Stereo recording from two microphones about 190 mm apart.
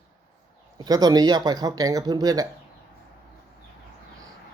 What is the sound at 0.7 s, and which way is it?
Speech, 20° right (ahead or behind).